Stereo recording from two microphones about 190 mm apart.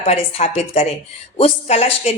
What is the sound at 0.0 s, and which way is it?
Speech, 35° left (ahead or behind).